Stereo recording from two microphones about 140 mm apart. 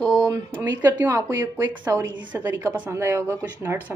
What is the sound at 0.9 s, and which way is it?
Speech, 10° right (ahead or behind).